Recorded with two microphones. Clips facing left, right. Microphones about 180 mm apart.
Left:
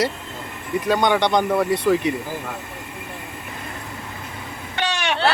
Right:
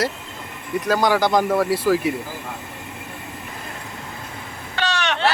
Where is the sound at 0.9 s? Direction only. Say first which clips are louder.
Even; centre (ahead or behind).